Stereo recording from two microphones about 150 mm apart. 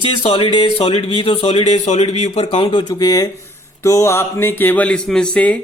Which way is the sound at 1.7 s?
50° left (ahead or behind).